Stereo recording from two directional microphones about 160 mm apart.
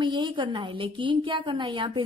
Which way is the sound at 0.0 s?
30° right (ahead or behind).